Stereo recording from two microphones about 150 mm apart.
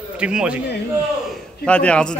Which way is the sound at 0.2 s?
5° right (ahead or behind).